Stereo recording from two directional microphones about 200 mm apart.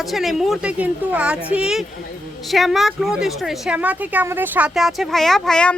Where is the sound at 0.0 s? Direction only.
Centre (ahead or behind).